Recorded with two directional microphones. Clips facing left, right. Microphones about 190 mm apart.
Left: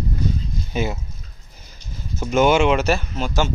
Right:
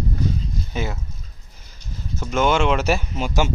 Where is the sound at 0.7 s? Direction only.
15° left (ahead or behind).